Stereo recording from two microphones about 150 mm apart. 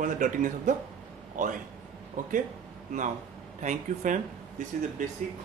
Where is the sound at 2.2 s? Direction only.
60° right (ahead or behind).